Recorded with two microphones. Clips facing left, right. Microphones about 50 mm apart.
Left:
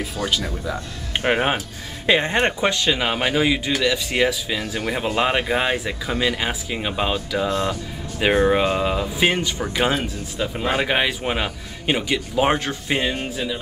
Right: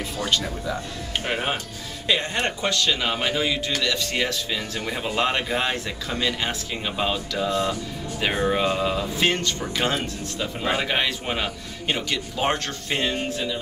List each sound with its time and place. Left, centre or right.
0.0 s speech: centre
1.2 s a man's voice: left; by 13.6 s centre